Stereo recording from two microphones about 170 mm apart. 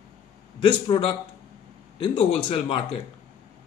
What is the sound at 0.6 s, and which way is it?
A man's voice, 25° left (ahead or behind).